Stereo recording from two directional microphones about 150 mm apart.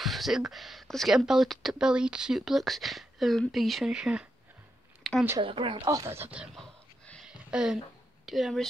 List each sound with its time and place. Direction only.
0.0 s speech: centre (ahead or behind)
5.1 s a sound: centre (ahead or behind)
5.4 s speech: 35° right (ahead or behind)
5.9 s speech: 20° right (ahead or behind)
7.2 s a sound: 5° right (ahead or behind)
8.3 s speech: centre (ahead or behind)